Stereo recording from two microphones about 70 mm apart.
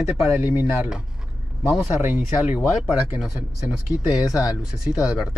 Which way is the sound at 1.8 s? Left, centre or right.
Centre.